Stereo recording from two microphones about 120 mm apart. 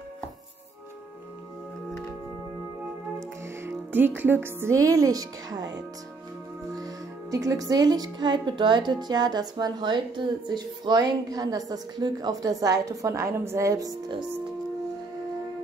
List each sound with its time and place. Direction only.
3.2 s music: 20° right (ahead or behind)
6.8 s speech: 30° right (ahead or behind)